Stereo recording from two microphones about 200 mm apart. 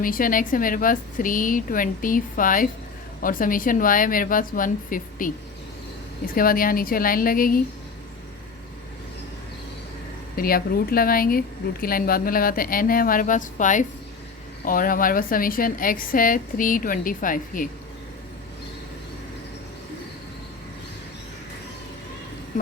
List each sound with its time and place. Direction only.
0.0 s speech: 45° left (ahead or behind)
10.3 s speech: 50° left (ahead or behind)